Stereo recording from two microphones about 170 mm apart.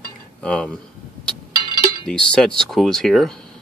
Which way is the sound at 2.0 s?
5° left (ahead or behind).